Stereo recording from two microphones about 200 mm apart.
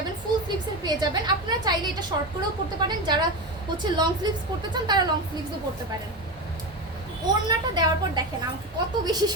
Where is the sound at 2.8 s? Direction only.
20° right (ahead or behind).